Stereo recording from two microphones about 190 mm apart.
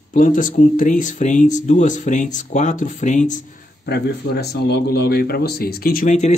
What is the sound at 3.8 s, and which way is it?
Speech, 60° left (ahead or behind).